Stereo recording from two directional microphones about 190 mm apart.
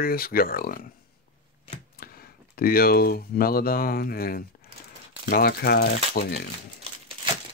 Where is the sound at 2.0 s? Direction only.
50° left (ahead or behind).